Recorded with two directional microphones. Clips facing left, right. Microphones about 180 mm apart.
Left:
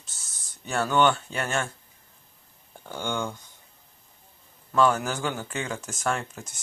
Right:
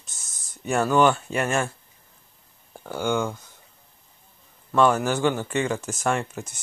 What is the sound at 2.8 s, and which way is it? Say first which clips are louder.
Speech: right 6 dB; 10° right (ahead or behind).